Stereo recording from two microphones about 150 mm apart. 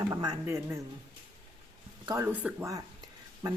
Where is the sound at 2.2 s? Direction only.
15° right (ahead or behind).